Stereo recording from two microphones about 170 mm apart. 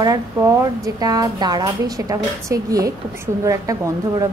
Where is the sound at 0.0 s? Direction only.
20° right (ahead or behind).